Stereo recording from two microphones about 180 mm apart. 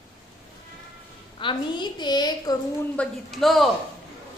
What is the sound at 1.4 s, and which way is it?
A woman's voice, 25° left (ahead or behind).